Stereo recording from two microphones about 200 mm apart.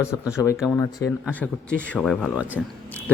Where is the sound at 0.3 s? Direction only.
10° left (ahead or behind).